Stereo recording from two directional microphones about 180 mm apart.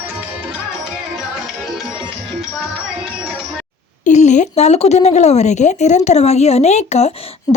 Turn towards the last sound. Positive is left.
turn(degrees=35)  # may be behind; listen again after turning